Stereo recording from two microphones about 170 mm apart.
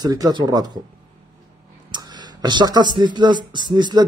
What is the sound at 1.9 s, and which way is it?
Speech, 25° right (ahead or behind).